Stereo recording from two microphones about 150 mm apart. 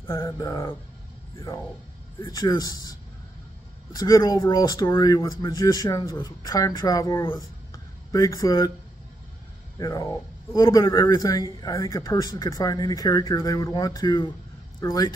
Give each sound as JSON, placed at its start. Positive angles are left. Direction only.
{"t": 0.1, "sound": "speech", "side_deg": 15}
{"t": 2.1, "sound": "speech", "side_deg": 25}
{"t": 4.0, "sound": "speech", "side_deg": 25}
{"t": 9.8, "sound": "speech", "side_deg": 25}